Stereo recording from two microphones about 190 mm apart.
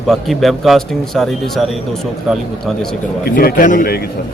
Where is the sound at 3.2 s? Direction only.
50° left (ahead or behind).